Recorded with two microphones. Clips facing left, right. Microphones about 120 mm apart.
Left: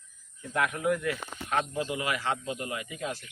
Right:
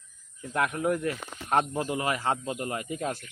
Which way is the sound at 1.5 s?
50° right (ahead or behind).